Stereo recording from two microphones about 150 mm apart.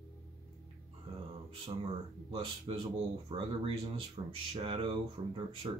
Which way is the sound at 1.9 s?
40° right (ahead or behind).